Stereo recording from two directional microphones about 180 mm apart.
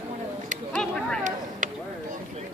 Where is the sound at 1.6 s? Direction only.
45° right (ahead or behind).